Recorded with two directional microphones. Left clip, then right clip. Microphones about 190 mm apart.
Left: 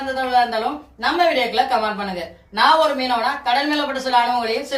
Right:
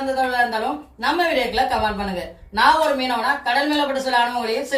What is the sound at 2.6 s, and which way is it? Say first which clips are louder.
A woman's voice: left 1 dB; 20° left (ahead or behind).